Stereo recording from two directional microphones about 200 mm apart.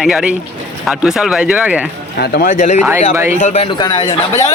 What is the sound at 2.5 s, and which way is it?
Speech, 35° left (ahead or behind).